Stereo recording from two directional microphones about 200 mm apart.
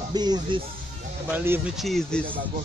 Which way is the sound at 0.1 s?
20° right (ahead or behind).